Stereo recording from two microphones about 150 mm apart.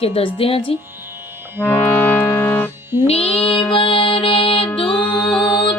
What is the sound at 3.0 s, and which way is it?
Speech, 40° left (ahead or behind).